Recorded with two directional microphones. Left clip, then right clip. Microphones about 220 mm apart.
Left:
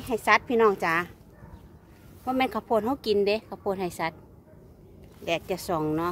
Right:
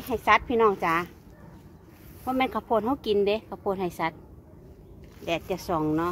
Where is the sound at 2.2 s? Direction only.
5° left (ahead or behind).